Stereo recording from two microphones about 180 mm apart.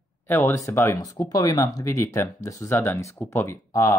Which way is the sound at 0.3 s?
15° left (ahead or behind).